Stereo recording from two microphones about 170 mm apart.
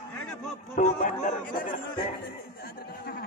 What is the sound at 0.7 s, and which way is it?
Speech, 50° left (ahead or behind).